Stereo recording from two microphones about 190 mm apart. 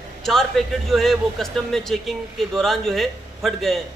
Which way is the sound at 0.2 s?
Centre (ahead or behind).